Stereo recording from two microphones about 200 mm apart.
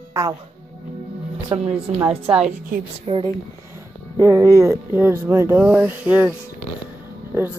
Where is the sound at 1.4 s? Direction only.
30° right (ahead or behind).